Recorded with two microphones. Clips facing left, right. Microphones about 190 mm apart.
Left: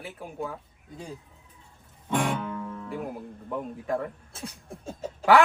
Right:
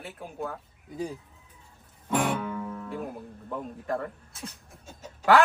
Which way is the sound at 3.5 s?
Centre (ahead or behind).